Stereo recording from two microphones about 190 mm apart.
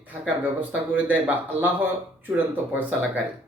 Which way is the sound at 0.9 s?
10° right (ahead or behind).